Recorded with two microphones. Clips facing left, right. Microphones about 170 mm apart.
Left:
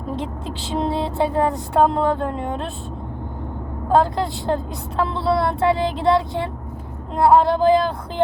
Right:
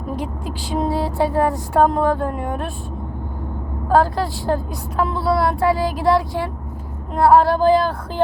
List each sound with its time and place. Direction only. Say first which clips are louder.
0.2 s a woman's voice: right 1 dB; 25° left (ahead or behind)
3.8 s a woman's voice: right 1 dB; 20° left (ahead or behind)